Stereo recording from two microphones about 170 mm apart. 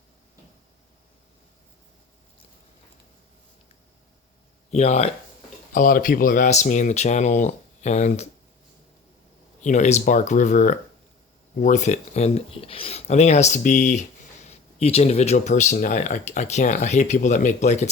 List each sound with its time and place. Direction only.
4.7 s speech: 40° left (ahead or behind)
5.7 s speech: 50° left (ahead or behind)
9.6 s speech: 45° left (ahead or behind)